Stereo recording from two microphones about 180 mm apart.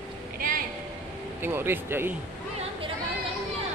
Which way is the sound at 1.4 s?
10° right (ahead or behind).